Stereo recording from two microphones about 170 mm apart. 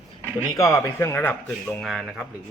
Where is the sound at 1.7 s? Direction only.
Centre (ahead or behind).